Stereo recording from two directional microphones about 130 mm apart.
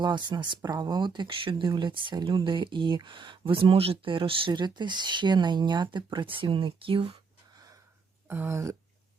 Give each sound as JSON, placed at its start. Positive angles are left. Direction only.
{"t": 0.0, "sound": "speech", "side_deg": -35}
{"t": 8.3, "sound": "speech", "side_deg": -20}